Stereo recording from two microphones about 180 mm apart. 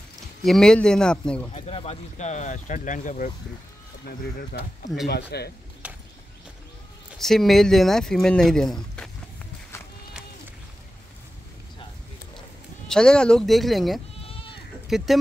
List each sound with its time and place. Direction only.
0.4 s speech: centre (ahead or behind)
1.5 s speech: 35° left (ahead or behind); by 4.9 s 50° left (ahead or behind)
5.0 s speech: 65° left (ahead or behind)
5.8 s horse: 5° right (ahead or behind)
7.2 s speech: centre (ahead or behind)
12.8 s speech: 5° left (ahead or behind)
14.2 s goat: 30° left (ahead or behind)
14.9 s speech: centre (ahead or behind)